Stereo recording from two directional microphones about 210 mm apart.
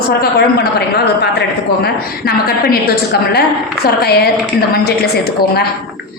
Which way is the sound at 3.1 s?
50° left (ahead or behind).